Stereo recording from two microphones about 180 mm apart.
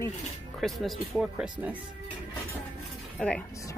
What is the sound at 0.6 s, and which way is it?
Speech, centre (ahead or behind).